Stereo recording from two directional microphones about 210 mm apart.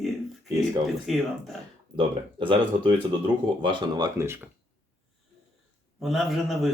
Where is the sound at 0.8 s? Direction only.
Centre (ahead or behind).